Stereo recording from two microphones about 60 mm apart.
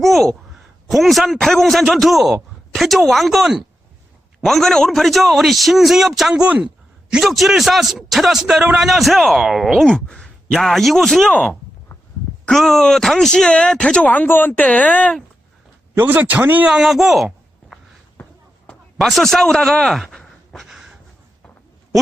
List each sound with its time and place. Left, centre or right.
0.0 s a sound: centre
0.9 s a man's voice: centre
6.4 s speech: centre
7.1 s a man's voice: centre
9.8 s speech: centre
12.5 s speech: centre
14.1 s speech: left
16.0 s speech: right
16.6 s speech: centre
18.9 s a man's voice: centre